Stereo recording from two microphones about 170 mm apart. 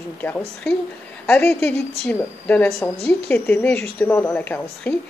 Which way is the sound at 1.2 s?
10° left (ahead or behind).